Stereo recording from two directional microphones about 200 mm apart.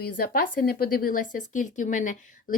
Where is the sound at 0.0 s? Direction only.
50° left (ahead or behind).